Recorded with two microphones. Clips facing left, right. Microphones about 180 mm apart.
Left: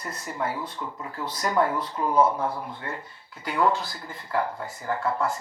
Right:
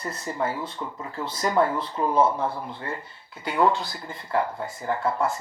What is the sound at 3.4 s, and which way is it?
Speech, 25° right (ahead or behind).